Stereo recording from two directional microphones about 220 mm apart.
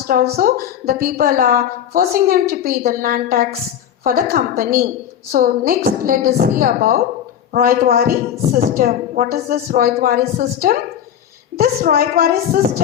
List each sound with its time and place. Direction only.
0.1 s a woman's voice: 40° right (ahead or behind)